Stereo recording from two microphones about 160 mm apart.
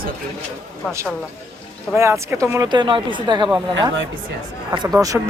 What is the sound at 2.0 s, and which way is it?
Speech, 15° right (ahead or behind).